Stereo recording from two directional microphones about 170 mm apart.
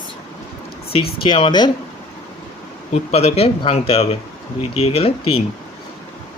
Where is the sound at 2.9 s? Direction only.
40° left (ahead or behind).